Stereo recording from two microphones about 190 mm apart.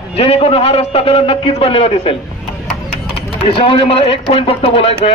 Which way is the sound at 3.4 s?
30° left (ahead or behind).